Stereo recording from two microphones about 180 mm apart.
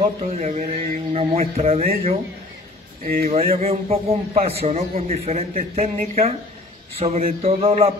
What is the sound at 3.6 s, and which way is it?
A man's voice, 35° right (ahead or behind).